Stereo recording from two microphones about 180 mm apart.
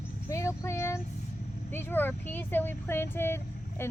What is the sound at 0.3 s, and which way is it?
Child singing, 15° left (ahead or behind).